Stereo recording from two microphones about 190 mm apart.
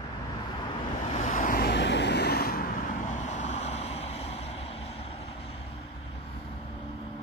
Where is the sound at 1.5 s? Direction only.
60° left (ahead or behind); by 4.5 s 35° left (ahead or behind).